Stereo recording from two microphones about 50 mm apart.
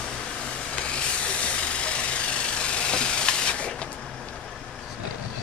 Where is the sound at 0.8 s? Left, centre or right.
Left.